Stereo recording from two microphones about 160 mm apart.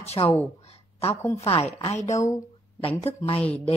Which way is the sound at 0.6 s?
40° left (ahead or behind).